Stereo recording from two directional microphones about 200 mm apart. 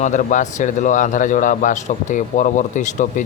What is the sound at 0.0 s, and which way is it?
Speech, 40° left (ahead or behind).